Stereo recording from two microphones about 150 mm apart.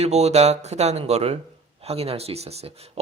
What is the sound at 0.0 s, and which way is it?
Speech, 45° right (ahead or behind).